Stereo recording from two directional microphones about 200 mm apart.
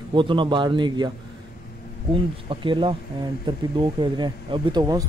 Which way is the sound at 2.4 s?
25° right (ahead or behind).